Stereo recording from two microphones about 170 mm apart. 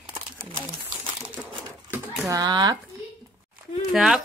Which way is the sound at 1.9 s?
20° right (ahead or behind).